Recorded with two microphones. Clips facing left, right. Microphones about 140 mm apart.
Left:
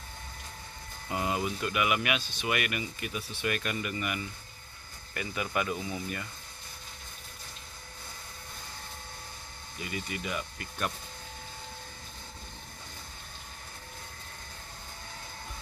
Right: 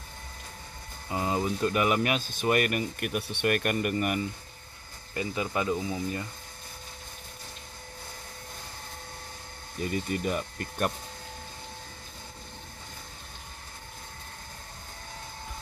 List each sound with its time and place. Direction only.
1.0 s speech: 25° right (ahead or behind); by 4.2 s 45° right (ahead or behind)
5.1 s speech: 25° right (ahead or behind)
9.8 s speech: 45° right (ahead or behind)